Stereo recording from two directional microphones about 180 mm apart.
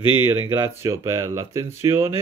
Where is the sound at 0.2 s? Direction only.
15° right (ahead or behind).